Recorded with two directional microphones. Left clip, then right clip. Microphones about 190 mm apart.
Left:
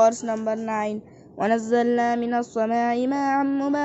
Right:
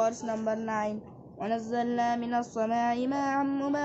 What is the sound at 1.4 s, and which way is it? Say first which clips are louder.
Speech: left 10 dB; 40° left (ahead or behind).